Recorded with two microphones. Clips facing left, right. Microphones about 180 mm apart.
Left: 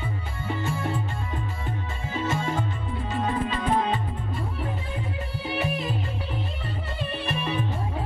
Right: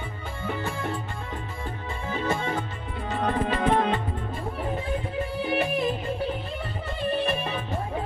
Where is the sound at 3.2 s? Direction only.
60° right (ahead or behind).